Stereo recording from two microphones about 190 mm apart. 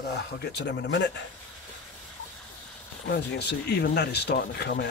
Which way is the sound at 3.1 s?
60° left (ahead or behind).